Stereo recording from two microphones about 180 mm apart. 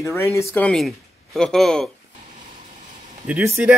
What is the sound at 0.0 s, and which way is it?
Speech, 15° left (ahead or behind).